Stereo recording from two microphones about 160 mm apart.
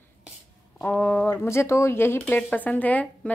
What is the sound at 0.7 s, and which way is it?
A woman's voice, 10° left (ahead or behind).